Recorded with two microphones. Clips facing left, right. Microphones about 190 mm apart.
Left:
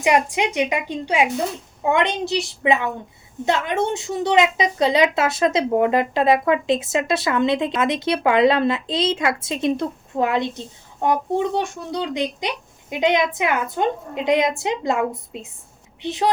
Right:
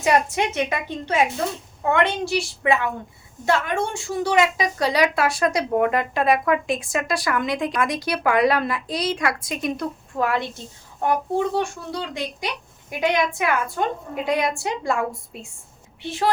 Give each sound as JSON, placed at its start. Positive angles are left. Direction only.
{"t": 0.0, "sound": "a woman's voice", "side_deg": 15}